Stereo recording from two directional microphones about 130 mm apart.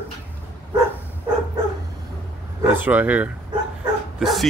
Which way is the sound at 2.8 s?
15° right (ahead or behind).